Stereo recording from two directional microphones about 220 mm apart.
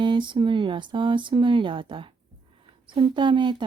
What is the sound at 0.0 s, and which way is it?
Speech, 20° right (ahead or behind).